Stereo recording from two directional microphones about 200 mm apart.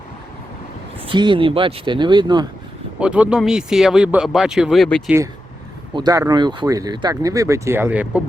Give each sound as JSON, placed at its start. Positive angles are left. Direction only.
{"t": 1.0, "sound": "speech", "side_deg": -25}
{"t": 3.0, "sound": "speech", "side_deg": -5}
{"t": 5.9, "sound": "speech", "side_deg": -20}